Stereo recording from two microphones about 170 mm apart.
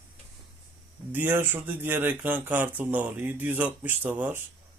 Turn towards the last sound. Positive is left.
turn(degrees=-10)  # may be behind; listen again after turning